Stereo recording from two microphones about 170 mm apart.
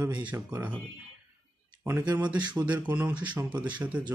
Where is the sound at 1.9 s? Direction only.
15° right (ahead or behind).